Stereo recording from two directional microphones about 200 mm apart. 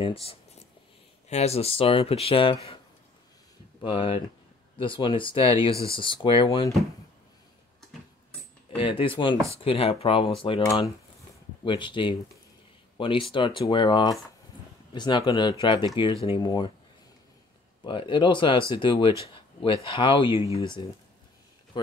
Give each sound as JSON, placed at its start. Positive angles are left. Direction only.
{"t": 0.0, "sound": "a sound", "side_deg": 30}
{"t": 1.3, "sound": "speech", "side_deg": 30}
{"t": 3.8, "sound": "speech", "side_deg": 25}
{"t": 8.7, "sound": "speech", "side_deg": 25}
{"t": 17.8, "sound": "speech", "side_deg": 25}